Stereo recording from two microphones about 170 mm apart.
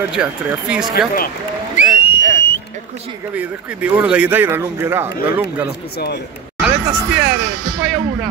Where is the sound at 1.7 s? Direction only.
40° left (ahead or behind).